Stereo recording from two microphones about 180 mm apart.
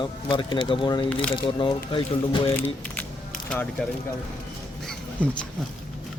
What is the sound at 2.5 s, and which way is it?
Speech, 10° left (ahead or behind).